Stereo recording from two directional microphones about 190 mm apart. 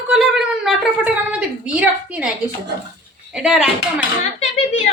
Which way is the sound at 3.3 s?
5° right (ahead or behind).